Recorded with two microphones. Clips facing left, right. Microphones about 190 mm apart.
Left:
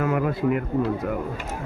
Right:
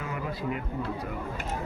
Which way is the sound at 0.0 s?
60° left (ahead or behind).